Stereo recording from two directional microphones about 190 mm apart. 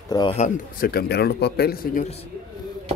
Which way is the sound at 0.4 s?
50° left (ahead or behind).